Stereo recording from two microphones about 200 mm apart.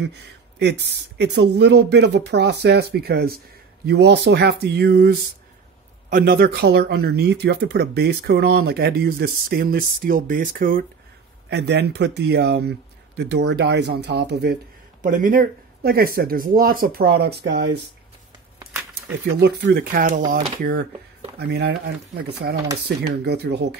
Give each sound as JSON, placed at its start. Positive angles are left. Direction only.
{"t": 0.0, "sound": "speech", "side_deg": -55}
{"t": 11.5, "sound": "speech", "side_deg": -55}
{"t": 19.4, "sound": "speech", "side_deg": -55}